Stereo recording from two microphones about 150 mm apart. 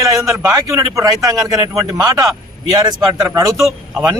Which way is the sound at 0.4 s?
25° right (ahead or behind).